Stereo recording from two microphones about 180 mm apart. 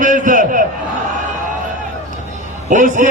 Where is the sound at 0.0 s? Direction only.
45° right (ahead or behind).